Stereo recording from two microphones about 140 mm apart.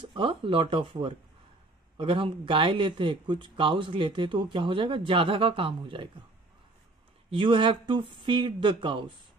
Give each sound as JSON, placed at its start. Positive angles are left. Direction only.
{"t": 0.0, "sound": "speech", "side_deg": -35}
{"t": 7.2, "sound": "speech", "side_deg": -35}